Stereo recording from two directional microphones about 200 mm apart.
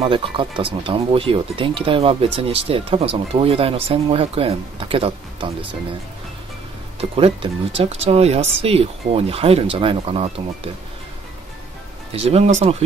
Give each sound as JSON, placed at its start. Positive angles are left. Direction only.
{"t": 0.1, "sound": "speech", "side_deg": -25}
{"t": 7.0, "sound": "speech", "side_deg": -30}
{"t": 12.1, "sound": "speech", "side_deg": -30}